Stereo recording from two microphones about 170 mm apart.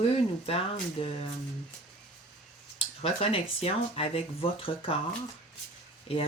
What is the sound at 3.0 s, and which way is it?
Speech, 35° left (ahead or behind).